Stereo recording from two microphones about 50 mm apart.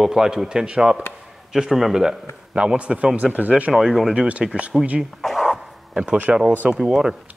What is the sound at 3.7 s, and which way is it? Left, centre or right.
Speech, centre.